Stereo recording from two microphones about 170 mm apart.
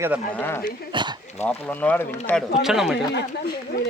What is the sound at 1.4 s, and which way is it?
Speech, 10° left (ahead or behind).